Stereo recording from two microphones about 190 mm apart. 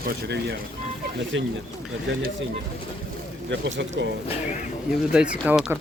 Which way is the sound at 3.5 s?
70° right (ahead or behind).